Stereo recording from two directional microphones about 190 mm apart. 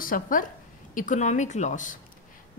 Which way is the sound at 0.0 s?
45° left (ahead or behind).